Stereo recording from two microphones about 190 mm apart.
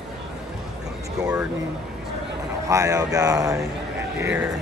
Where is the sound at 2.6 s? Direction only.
15° right (ahead or behind).